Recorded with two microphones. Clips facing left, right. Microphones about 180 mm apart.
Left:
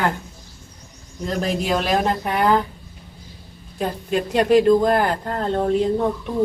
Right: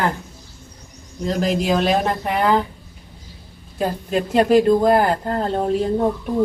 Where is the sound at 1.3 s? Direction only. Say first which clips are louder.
Right 3 dB; centre (ahead or behind).